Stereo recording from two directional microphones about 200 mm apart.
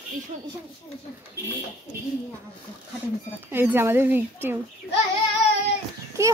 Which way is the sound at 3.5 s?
10° right (ahead or behind).